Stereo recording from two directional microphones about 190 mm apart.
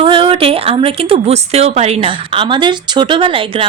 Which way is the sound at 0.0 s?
30° right (ahead or behind).